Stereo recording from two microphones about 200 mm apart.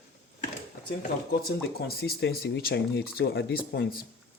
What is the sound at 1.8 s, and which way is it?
Speech, 50° left (ahead or behind).